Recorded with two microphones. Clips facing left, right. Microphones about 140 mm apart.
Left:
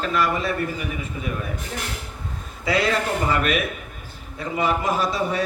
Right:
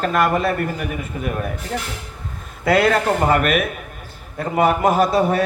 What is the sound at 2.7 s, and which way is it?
A man's voice, 55° right (ahead or behind).